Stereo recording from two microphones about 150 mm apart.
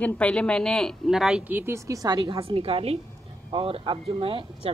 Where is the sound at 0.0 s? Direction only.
10° left (ahead or behind); by 2.4 s 25° right (ahead or behind).